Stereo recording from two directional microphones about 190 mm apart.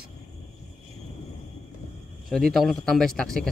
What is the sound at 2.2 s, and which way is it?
A man's voice, centre (ahead or behind).